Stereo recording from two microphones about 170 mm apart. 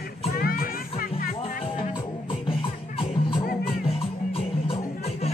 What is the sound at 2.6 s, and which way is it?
Music, 30° left (ahead or behind).